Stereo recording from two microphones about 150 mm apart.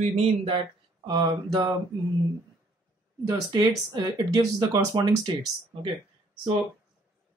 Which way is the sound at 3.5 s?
25° right (ahead or behind).